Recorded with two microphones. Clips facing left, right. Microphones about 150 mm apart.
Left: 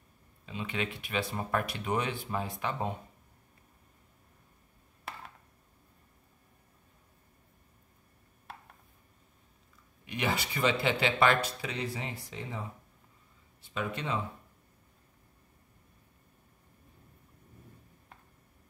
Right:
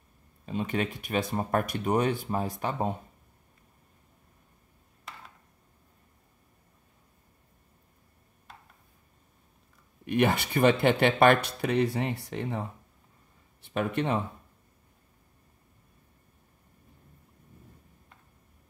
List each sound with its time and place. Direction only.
0.5 s speech: 45° right (ahead or behind)
10.0 s speech: 55° right (ahead or behind)